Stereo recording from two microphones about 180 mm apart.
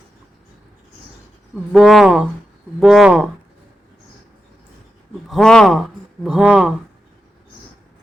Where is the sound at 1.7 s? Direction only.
Centre (ahead or behind).